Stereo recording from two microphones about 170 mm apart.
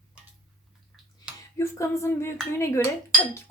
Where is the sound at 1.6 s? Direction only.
15° left (ahead or behind).